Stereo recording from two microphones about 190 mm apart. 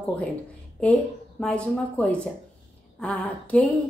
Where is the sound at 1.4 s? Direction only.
5° left (ahead or behind).